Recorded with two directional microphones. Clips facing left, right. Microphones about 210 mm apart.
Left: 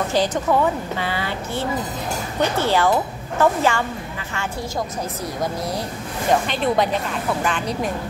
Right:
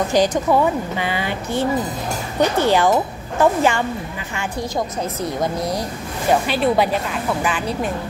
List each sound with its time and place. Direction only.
0.1 s a woman's voice: 15° right (ahead or behind)
6.4 s a woman's voice: 5° right (ahead or behind)